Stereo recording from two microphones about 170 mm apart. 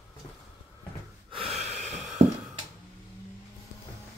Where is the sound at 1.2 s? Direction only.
35° right (ahead or behind).